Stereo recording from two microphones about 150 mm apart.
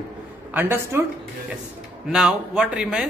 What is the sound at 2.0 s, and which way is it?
A man's voice, 5° right (ahead or behind).